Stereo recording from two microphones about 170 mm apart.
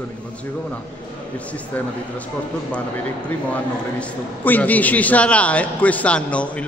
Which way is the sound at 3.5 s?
10° left (ahead or behind).